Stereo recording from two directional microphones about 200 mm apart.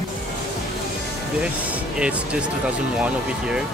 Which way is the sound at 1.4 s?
5° right (ahead or behind).